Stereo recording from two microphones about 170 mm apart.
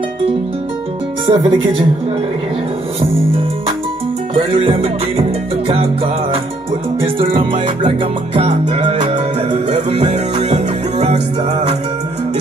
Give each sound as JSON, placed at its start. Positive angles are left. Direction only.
{"t": 1.2, "sound": "music", "side_deg": -30}
{"t": 4.5, "sound": "music", "side_deg": -35}
{"t": 7.3, "sound": "music", "side_deg": -30}
{"t": 8.5, "sound": "music", "side_deg": -40}